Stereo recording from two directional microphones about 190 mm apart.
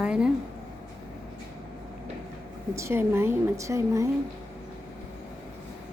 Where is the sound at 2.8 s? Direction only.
15° right (ahead or behind).